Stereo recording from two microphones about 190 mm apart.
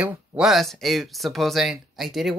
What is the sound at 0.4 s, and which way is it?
Speech, centre (ahead or behind).